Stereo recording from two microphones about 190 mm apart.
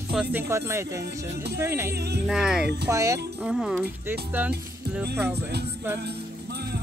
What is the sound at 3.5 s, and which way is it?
Speech, 5° right (ahead or behind).